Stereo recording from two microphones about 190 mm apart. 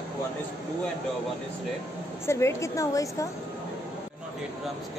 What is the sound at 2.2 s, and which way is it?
A woman's voice, 15° left (ahead or behind).